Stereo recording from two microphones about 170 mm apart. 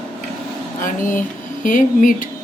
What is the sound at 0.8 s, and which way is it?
A woman's voice, 50° left (ahead or behind).